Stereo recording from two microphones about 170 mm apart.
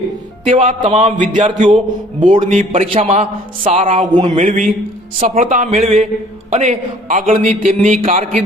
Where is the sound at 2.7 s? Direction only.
35° right (ahead or behind).